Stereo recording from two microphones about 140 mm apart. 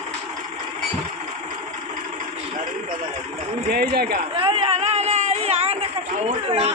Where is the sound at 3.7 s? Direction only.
90° right.